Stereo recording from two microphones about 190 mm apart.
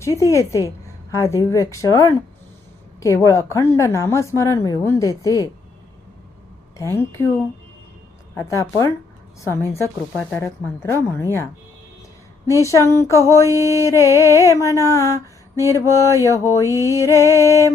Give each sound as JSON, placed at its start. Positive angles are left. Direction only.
{"t": 0.0, "sound": "a woman's voice", "side_deg": 15}
{"t": 6.7, "sound": "a woman's voice", "side_deg": 15}
{"t": 8.4, "sound": "a woman's voice", "side_deg": 15}
{"t": 12.6, "sound": "a woman's voice", "side_deg": 15}